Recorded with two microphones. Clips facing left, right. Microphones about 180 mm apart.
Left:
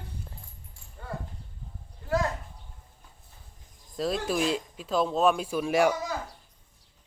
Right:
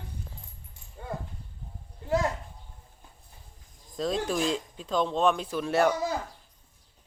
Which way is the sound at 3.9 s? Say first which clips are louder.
Even; 5° left (ahead or behind).